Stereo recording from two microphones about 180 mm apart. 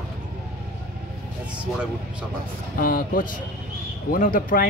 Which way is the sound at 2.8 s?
50° left (ahead or behind).